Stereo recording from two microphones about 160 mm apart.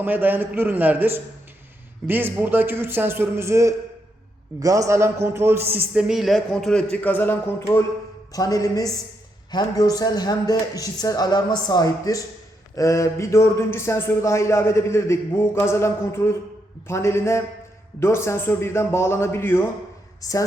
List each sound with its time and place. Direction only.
0.0 s a man's voice: 10° right (ahead or behind); by 20.4 s 20° left (ahead or behind)